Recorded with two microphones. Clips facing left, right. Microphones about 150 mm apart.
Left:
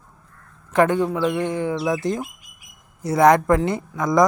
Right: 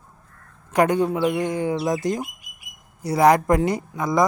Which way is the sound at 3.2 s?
10° right (ahead or behind).